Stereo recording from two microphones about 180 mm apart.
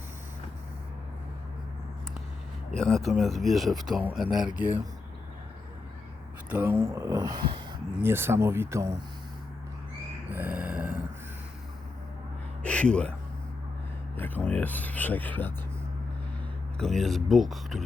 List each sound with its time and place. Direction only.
2.7 s speech: centre (ahead or behind)
6.5 s speech: 10° right (ahead or behind)
8.0 s speech: 15° right (ahead or behind)
10.2 s a sound: 10° right (ahead or behind)
12.6 s a sound: 5° left (ahead or behind)
14.2 s speech: 10° left (ahead or behind)
16.7 s speech: centre (ahead or behind)